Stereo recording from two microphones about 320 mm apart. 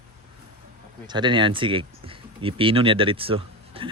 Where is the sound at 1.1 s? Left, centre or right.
Centre.